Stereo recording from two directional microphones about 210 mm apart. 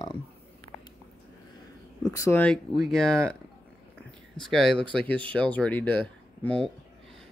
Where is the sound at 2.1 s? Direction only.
10° left (ahead or behind).